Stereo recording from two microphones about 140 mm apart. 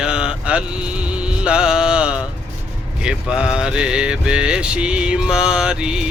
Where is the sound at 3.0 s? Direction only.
5° right (ahead or behind).